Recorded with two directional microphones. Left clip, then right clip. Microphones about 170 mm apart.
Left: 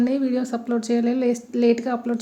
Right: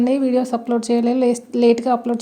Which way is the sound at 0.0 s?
20° right (ahead or behind).